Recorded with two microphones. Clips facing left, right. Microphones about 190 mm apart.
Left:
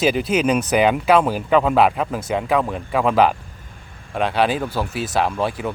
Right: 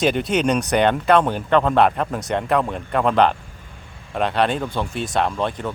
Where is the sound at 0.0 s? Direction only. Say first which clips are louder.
Left 1 dB; centre (ahead or behind).